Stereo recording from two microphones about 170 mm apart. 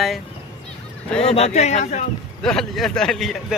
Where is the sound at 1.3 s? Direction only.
40° left (ahead or behind).